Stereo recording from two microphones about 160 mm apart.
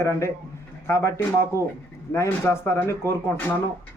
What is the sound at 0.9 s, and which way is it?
Speech, 15° left (ahead or behind).